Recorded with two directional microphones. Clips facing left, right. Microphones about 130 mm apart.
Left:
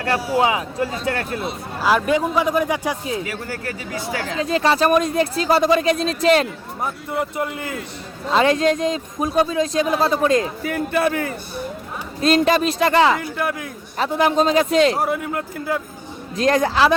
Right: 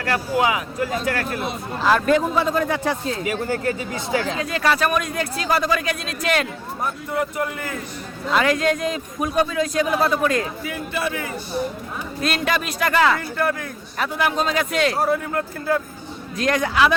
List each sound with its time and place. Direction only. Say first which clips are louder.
0.3 s speech: left 1 dB; 30° left (ahead or behind)
1.8 s a man's voice: even; 10° left (ahead or behind)
3.2 s speech: right 6 dB; 20° right (ahead or behind)
4.4 s speech: left 3 dB; 30° left (ahead or behind)
10.6 s a man's voice: left 6 dB; 50° left (ahead or behind)
12.2 s speech: left 7 dB; 30° left (ahead or behind)
13.1 s a man's voice: right 1 dB; 15° left (ahead or behind)
14.0 s speech: left 5 dB; 35° left (ahead or behind)
14.9 s a man's voice: right 1 dB; 15° left (ahead or behind)
16.4 s speech: left 3 dB; 30° left (ahead or behind)